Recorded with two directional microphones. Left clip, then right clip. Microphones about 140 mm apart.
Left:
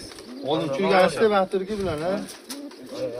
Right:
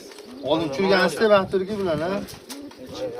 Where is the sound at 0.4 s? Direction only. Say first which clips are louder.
Right 2 dB; 35° right (ahead or behind).